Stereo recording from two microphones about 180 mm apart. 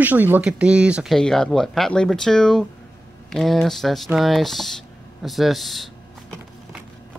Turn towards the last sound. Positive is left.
turn(degrees=0)  # may be behind; listen again after turning